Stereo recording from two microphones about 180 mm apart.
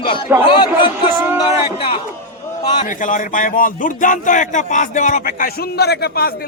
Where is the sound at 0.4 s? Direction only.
25° left (ahead or behind).